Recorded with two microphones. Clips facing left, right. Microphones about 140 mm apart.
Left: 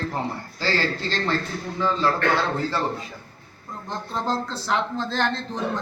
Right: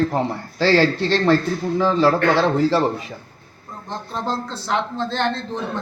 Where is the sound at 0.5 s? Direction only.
75° right (ahead or behind).